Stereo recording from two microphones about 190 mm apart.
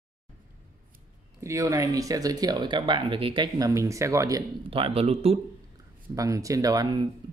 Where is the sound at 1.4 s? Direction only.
15° right (ahead or behind); by 5.4 s 30° right (ahead or behind).